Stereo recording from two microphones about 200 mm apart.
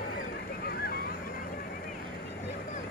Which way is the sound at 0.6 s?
50° left (ahead or behind).